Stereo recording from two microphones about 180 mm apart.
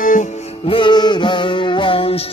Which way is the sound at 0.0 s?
45° left (ahead or behind).